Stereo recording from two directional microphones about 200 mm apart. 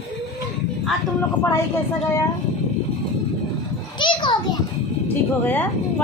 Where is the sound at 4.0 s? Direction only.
25° left (ahead or behind).